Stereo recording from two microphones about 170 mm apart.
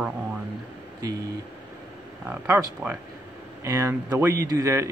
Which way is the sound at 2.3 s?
10° right (ahead or behind).